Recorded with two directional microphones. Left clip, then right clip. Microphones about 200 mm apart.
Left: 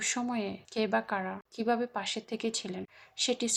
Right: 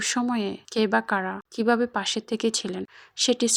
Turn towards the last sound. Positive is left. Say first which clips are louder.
# right 8 dB
turn(degrees=-30)  # may be behind; listen again after turning